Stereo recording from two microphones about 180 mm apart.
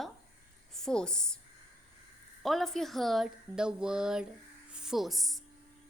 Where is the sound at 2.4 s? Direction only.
Centre (ahead or behind).